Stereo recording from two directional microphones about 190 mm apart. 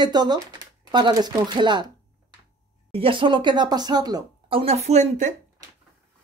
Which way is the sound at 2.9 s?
30° right (ahead or behind).